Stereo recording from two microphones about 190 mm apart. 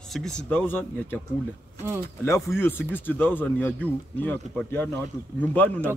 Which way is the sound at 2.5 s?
10° left (ahead or behind).